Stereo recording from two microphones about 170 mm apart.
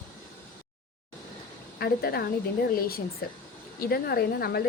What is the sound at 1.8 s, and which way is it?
A woman's voice, 65° left (ahead or behind).